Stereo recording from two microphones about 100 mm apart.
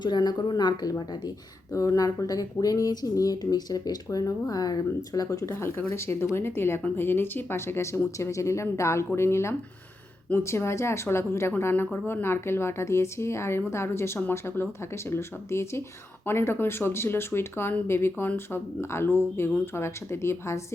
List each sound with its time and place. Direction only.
0.0 s a woman's voice: 45° left (ahead or behind); by 20.6 s 25° left (ahead or behind)